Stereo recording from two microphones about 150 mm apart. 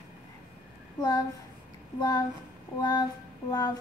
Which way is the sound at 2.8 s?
25° left (ahead or behind).